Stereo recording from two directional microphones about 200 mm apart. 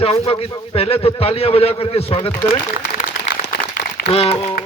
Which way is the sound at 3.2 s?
45° left (ahead or behind).